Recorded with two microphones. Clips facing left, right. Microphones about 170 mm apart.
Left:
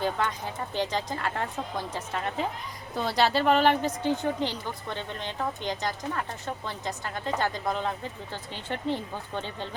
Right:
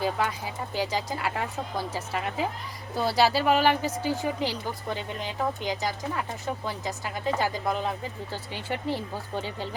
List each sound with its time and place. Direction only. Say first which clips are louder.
0.0 s speech: right 1 dB; 5° right (ahead or behind)